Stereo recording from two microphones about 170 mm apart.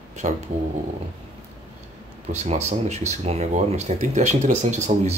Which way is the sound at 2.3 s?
40° right (ahead or behind).